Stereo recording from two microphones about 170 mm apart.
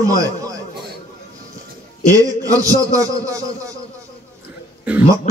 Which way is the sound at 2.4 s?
20° right (ahead or behind).